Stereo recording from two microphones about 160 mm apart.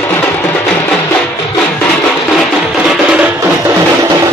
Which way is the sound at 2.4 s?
Centre (ahead or behind).